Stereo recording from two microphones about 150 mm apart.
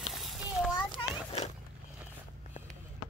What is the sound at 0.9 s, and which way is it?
Children playing, 40° left (ahead or behind).